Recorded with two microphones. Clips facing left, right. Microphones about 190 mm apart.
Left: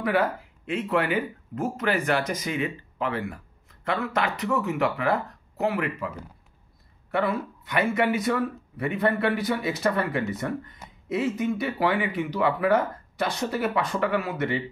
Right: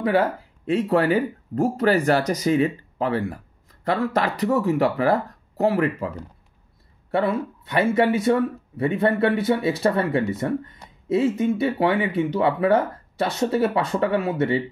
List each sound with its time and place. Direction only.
0.7 s speech: 35° right (ahead or behind)